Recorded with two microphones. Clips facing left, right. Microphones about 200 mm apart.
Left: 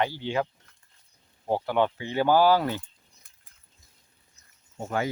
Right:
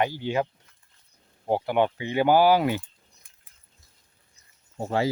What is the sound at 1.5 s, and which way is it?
Speech, 15° right (ahead or behind).